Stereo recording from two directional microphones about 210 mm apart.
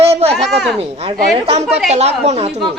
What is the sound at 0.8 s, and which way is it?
A woman's voice, 25° right (ahead or behind).